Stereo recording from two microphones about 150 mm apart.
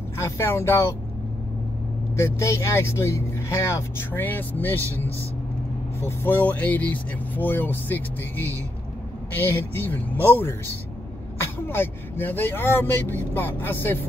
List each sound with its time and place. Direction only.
0.2 s speech: 15° left (ahead or behind)
2.1 s speech: 20° left (ahead or behind)
6.0 s speech: 15° left (ahead or behind)
11.4 s speech: 15° left (ahead or behind)